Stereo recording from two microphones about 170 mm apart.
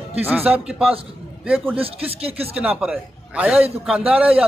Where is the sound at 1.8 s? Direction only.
35° right (ahead or behind).